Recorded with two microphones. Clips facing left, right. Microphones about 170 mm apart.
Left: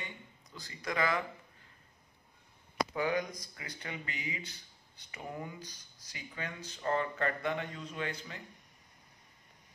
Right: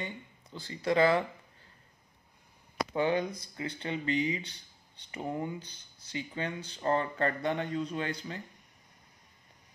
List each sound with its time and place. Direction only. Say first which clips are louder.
0.0 s speech: right 7 dB; 30° right (ahead or behind)
2.9 s speech: right 6 dB; 25° right (ahead or behind)